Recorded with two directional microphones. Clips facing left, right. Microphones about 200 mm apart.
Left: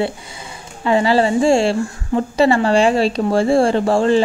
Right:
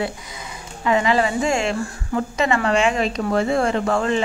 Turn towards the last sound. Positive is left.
turn(degrees=30)  # may be behind; listen again after turning